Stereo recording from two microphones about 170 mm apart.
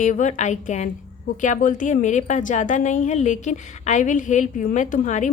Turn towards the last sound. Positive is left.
turn(degrees=45)  # may be behind; listen again after turning